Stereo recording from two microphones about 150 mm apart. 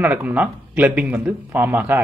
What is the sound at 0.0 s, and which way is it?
Speech, 10° right (ahead or behind).